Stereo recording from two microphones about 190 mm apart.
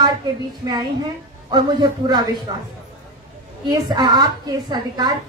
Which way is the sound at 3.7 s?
20° right (ahead or behind).